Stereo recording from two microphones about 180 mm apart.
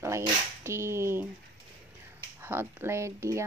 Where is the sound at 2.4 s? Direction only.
15° right (ahead or behind).